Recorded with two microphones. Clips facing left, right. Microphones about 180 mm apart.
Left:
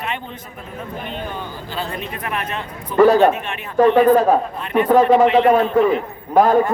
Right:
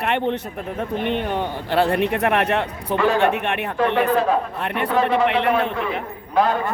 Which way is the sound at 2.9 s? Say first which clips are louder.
Left 7 dB; 40° left (ahead or behind).